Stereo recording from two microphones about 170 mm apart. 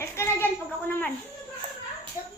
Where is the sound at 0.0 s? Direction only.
15° left (ahead or behind).